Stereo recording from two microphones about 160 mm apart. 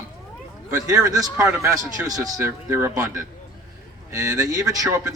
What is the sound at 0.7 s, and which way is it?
A man's voice, 20° right (ahead or behind).